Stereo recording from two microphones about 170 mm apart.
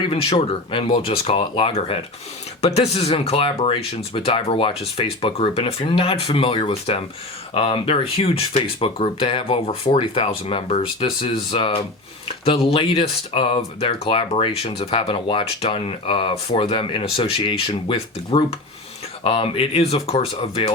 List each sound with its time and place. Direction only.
0.1 s speech: 35° left (ahead or behind)